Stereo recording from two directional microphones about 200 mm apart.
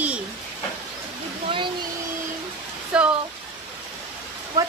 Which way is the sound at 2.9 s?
5° right (ahead or behind).